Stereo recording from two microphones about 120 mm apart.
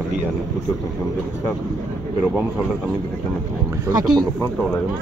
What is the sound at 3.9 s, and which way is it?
Speech, 35° right (ahead or behind).